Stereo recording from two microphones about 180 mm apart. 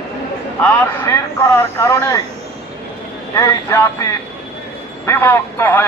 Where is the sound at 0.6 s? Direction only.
15° left (ahead or behind).